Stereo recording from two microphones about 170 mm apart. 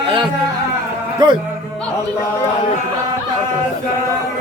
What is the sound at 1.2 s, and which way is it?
Speech, 25° right (ahead or behind).